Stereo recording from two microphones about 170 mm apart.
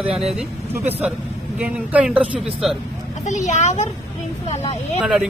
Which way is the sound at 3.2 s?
45° left (ahead or behind).